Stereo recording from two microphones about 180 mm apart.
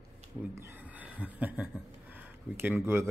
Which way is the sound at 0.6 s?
10° right (ahead or behind).